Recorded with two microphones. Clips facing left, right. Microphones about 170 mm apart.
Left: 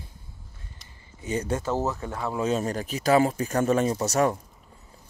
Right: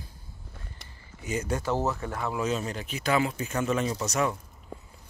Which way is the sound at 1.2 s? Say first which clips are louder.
Left 2 dB; 30° left (ahead or behind).